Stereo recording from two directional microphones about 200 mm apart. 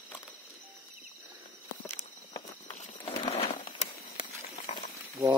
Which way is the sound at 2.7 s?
30° left (ahead or behind).